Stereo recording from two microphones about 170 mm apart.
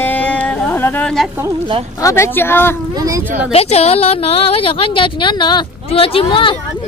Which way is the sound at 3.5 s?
40° left (ahead or behind).